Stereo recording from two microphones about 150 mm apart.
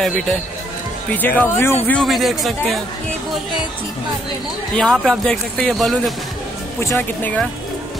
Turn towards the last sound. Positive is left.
turn(degrees=10)  # may be behind; listen again after turning